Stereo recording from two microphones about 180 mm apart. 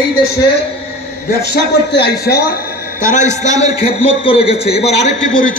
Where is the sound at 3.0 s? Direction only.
45° left (ahead or behind).